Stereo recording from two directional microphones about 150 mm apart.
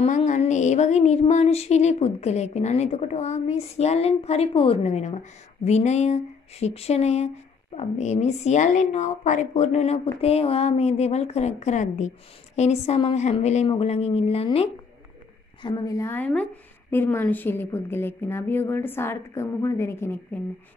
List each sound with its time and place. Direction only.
0.0 s a sound: 55° left (ahead or behind)
13.7 s speech: 45° left (ahead or behind)
15.6 s a woman's voice: 25° left (ahead or behind)